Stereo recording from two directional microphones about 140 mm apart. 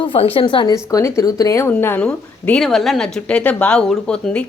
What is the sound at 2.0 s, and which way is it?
Speech, 5° left (ahead or behind).